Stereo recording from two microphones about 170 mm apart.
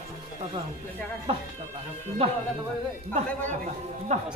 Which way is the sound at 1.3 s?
35° right (ahead or behind).